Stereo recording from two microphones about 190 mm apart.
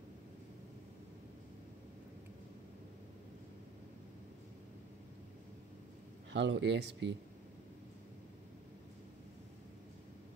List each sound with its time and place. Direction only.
6.3 s speech: 70° right (ahead or behind)